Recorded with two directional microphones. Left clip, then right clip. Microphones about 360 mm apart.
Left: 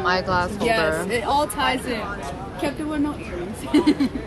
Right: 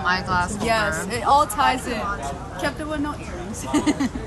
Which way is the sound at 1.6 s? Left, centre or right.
Right.